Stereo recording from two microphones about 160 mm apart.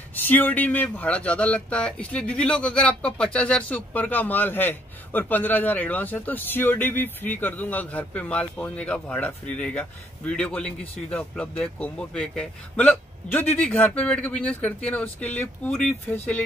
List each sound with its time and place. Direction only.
0.1 s speech: 10° left (ahead or behind)